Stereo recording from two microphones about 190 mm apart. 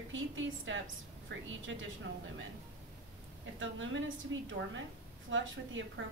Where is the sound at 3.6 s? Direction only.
90° right.